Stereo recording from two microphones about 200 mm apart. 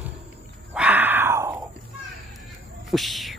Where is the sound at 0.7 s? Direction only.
5° right (ahead or behind).